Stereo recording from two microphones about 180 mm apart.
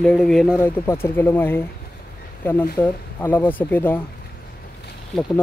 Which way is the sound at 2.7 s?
10° left (ahead or behind).